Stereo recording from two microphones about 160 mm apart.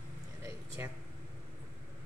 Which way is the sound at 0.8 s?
15° right (ahead or behind).